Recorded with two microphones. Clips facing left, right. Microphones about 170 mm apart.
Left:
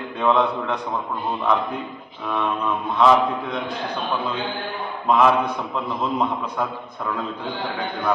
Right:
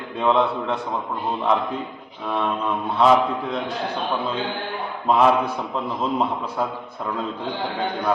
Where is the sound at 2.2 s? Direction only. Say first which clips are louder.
Even; centre (ahead or behind).